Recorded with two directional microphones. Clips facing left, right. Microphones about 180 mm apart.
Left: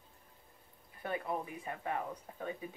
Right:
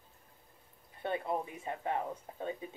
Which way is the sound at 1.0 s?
25° right (ahead or behind).